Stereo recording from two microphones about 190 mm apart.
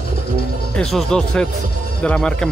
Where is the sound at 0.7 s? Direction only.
Centre (ahead or behind).